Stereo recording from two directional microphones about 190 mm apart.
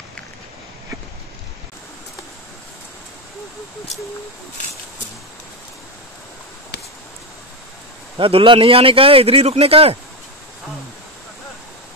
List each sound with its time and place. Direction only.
8.2 s a man's voice: 30° right (ahead or behind)